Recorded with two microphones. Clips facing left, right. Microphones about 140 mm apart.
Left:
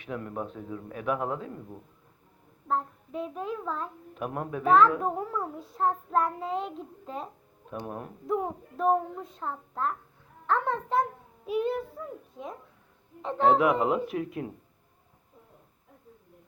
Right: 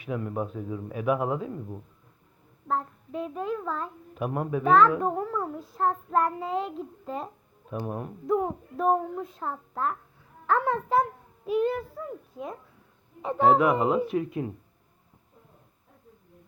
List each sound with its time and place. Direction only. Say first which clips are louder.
0.0 s a child's voice: right 4 dB; 5° right (ahead or behind)
2.6 s a child's voice: even; centre (ahead or behind)